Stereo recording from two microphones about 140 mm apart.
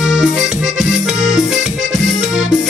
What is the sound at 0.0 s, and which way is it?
Accordion, 5° right (ahead or behind).